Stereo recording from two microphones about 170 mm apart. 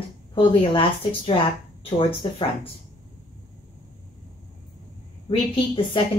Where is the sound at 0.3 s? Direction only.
30° left (ahead or behind).